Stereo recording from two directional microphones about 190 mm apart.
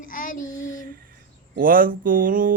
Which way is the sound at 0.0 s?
45° left (ahead or behind).